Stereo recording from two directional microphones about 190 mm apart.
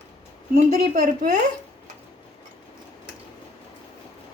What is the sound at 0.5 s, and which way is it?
Speech, 40° right (ahead or behind).